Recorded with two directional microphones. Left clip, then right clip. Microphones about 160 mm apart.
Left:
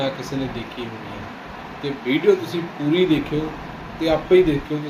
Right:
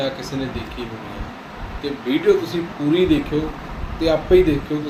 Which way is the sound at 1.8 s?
15° right (ahead or behind).